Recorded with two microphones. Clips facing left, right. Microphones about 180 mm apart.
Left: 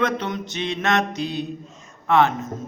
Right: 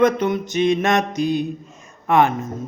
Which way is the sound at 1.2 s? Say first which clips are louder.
Right 6 dB; 50° right (ahead or behind).